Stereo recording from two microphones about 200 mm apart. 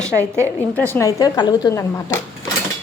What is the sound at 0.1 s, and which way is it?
Speech, 15° right (ahead or behind).